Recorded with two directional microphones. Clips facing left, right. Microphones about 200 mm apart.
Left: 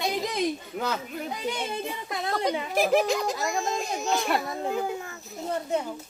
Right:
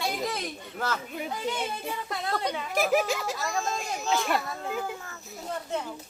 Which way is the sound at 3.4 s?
15° left (ahead or behind).